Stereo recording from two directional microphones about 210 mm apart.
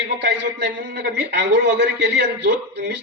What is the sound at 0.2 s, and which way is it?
A man's voice, 55° right (ahead or behind).